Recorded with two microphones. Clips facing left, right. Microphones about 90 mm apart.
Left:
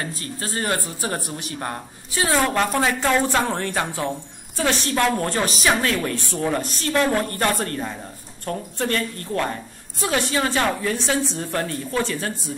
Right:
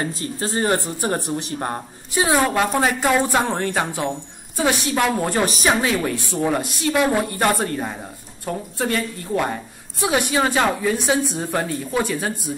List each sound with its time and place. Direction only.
0.0 s speech: 25° right (ahead or behind)
2.1 s a woman's voice: 15° right (ahead or behind)